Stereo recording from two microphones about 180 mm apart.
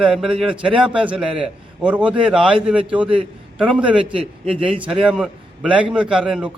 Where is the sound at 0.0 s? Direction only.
5° right (ahead or behind).